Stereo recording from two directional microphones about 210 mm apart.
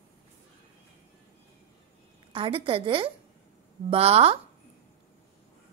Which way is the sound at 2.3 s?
25° right (ahead or behind).